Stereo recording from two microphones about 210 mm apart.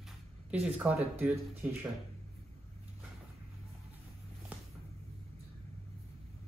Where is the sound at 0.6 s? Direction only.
5° right (ahead or behind).